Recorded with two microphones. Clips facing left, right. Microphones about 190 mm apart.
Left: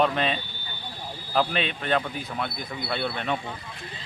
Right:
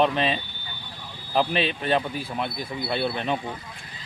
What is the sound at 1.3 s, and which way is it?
Speech, 20° right (ahead or behind).